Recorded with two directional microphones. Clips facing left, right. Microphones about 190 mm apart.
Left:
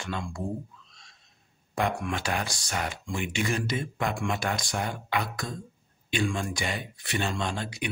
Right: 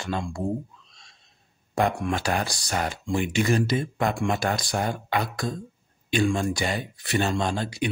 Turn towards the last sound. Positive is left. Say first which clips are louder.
# right 5 dB
turn(degrees=-35)  # may be behind; listen again after turning